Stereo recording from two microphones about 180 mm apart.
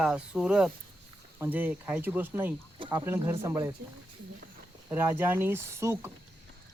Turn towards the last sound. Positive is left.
turn(degrees=-15)  # may be behind; listen again after turning